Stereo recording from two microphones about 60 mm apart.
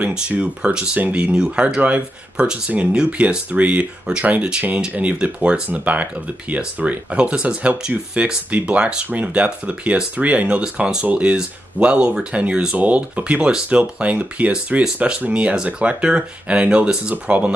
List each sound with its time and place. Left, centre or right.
0.0 s a sound: centre
0.3 s speech: right
1.3 s speech: centre
1.8 s speech: right